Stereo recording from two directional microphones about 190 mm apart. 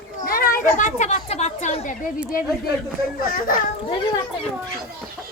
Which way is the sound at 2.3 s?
50° left (ahead or behind).